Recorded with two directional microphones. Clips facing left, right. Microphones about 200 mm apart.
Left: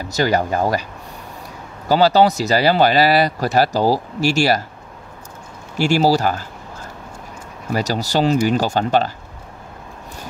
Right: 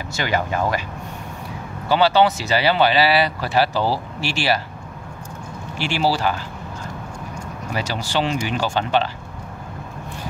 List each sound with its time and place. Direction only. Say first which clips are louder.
0.1 s speech: left 5 dB; 40° left (ahead or behind)
1.9 s speech: left 3 dB; 40° left (ahead or behind)
5.8 s speech: left 6 dB; 45° left (ahead or behind)
7.7 s speech: left 5 dB; 40° left (ahead or behind)